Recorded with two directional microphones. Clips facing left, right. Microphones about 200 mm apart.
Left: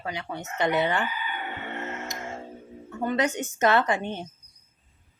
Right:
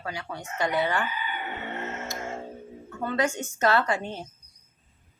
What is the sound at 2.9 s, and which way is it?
Speech, 20° left (ahead or behind).